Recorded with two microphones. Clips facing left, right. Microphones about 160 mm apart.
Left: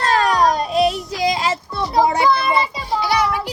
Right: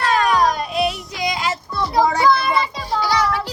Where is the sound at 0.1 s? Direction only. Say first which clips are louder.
Left 1 dB; 30° left (ahead or behind).